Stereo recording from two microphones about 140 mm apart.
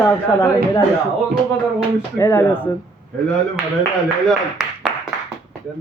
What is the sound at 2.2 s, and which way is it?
Speech, 15° left (ahead or behind).